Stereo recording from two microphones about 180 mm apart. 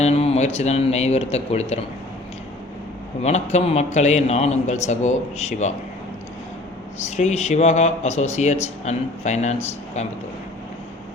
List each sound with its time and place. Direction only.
0.0 s a man's voice: 35° left (ahead or behind)
3.2 s a man's voice: 40° left (ahead or behind)
7.2 s a man's voice: 40° left (ahead or behind)